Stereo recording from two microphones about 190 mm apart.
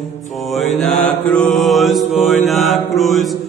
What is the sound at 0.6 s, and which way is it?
Mantra, centre (ahead or behind).